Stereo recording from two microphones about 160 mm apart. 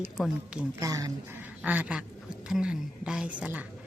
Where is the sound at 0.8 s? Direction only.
20° right (ahead or behind).